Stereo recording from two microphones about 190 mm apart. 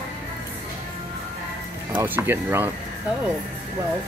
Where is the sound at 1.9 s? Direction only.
10° right (ahead or behind).